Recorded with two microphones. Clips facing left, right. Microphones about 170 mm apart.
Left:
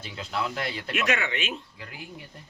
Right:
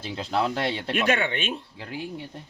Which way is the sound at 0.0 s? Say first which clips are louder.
Right 5 dB; 30° right (ahead or behind).